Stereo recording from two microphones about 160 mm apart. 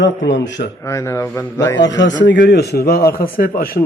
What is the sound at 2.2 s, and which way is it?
Speech, 90° left.